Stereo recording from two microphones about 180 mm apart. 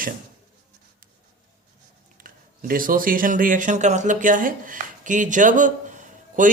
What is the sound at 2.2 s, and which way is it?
A man's voice, 50° right (ahead or behind).